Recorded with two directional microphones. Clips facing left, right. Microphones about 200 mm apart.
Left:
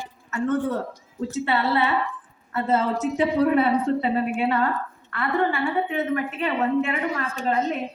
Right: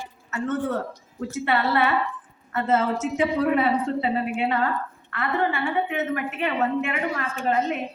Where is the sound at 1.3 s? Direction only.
30° left (ahead or behind).